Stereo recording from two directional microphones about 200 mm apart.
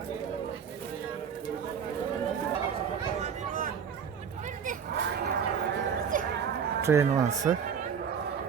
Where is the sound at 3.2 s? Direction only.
40° right (ahead or behind).